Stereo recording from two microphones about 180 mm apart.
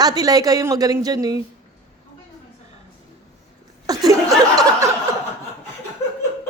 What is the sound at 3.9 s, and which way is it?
Chuckle, 20° right (ahead or behind).